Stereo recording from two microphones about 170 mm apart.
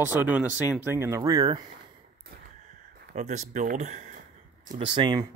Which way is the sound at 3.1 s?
45° right (ahead or behind).